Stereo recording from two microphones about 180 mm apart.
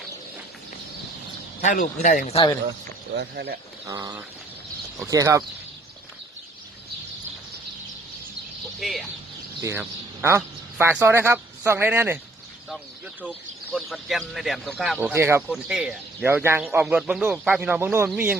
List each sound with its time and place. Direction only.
1.6 s speech: 50° left (ahead or behind)
2.3 s speech: 25° left (ahead or behind)
3.2 s speech: 65° right (ahead or behind)
3.8 s bird: 20° right (ahead or behind)
5.0 s speech: 15° right (ahead or behind)
8.8 s speech: centre (ahead or behind)
9.6 s speech: 15° right (ahead or behind)
13.7 s speech: centre (ahead or behind)
15.5 s speech: 5° right (ahead or behind)